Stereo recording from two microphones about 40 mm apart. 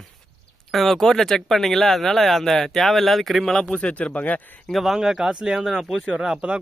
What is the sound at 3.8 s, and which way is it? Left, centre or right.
Speech, left.